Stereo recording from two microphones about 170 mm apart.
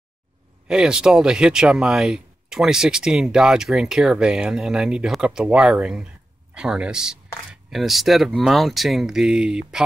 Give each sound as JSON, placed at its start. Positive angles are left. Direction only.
{"t": 0.7, "sound": "speech", "side_deg": -5}